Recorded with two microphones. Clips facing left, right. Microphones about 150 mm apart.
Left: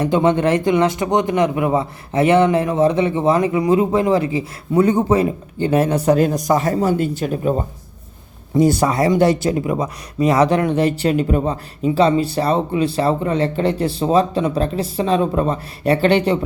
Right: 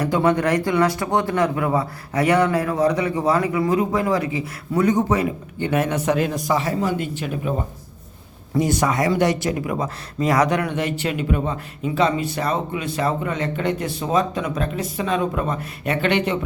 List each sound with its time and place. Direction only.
0.0 s a man's voice: 25° left (ahead or behind); by 7.5 s 40° left (ahead or behind)
8.5 s speech: 30° left (ahead or behind)